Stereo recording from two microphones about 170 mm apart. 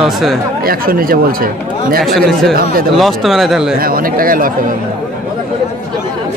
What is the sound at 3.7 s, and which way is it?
Speech, 60° right (ahead or behind).